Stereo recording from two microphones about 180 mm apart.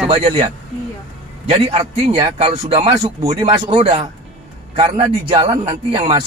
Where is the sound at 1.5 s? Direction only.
30° right (ahead or behind).